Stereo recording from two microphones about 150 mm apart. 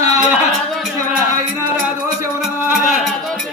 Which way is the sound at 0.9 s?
20° right (ahead or behind).